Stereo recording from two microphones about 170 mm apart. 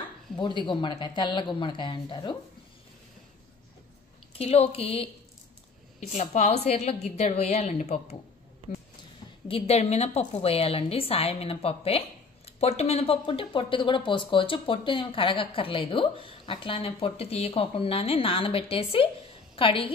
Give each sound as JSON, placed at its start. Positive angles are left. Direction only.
{"t": 0.4, "sound": "speech", "side_deg": 30}
{"t": 4.4, "sound": "speech", "side_deg": 35}
{"t": 9.5, "sound": "a woman's voice", "side_deg": 35}